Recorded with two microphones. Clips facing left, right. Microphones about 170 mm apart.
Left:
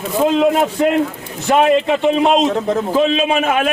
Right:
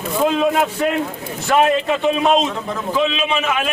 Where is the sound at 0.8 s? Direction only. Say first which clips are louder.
Left 4 dB; 25° left (ahead or behind).